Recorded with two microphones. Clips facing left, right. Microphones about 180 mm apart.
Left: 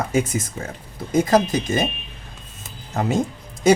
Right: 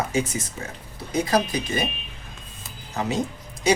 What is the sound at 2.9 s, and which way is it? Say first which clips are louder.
Speech: left 4 dB; 50° left (ahead or behind).